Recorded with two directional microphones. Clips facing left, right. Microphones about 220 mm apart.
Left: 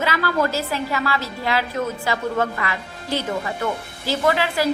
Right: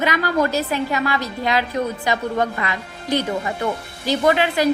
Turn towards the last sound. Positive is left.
turn(degrees=-20)  # may be behind; listen again after turning